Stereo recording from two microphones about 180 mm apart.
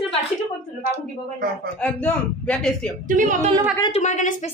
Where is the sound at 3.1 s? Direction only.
45° right (ahead or behind).